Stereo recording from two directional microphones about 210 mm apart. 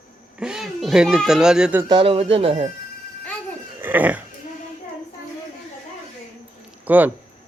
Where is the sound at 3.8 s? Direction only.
10° right (ahead or behind).